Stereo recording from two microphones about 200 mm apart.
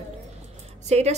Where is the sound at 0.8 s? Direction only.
35° right (ahead or behind).